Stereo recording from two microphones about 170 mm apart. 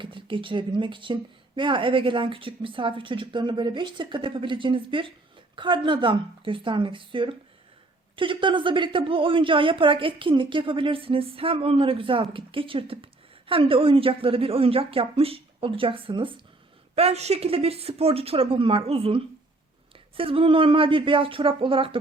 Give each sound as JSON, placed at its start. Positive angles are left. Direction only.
{"t": 0.0, "sound": "a woman's voice", "side_deg": -30}